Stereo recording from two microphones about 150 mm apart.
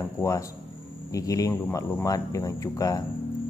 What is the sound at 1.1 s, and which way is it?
Speech, 20° left (ahead or behind).